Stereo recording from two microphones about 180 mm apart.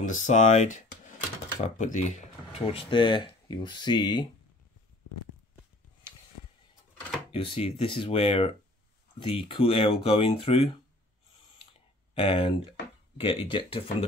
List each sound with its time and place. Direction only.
0.0 s speech: 40° left (ahead or behind); by 4.3 s 25° left (ahead or behind)
7.3 s speech: 35° left (ahead or behind)
12.2 s speech: 30° left (ahead or behind)